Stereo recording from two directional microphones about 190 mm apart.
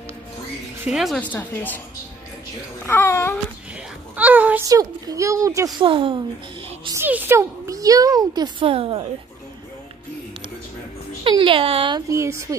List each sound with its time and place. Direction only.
0.8 s a woman's voice: centre (ahead or behind)
2.9 s a woman's voice: 15° left (ahead or behind)
4.2 s a child's voice: 10° right (ahead or behind)
5.8 s a child's voice: 25° right (ahead or behind)
6.8 s a child's voice: 15° right (ahead or behind)
11.2 s a child's voice: 25° right (ahead or behind)
12.1 s a child's voice: 15° right (ahead or behind)